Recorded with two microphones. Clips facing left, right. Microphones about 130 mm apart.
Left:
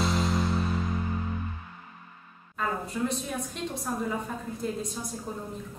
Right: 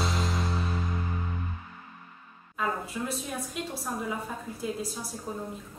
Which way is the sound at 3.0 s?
5° right (ahead or behind).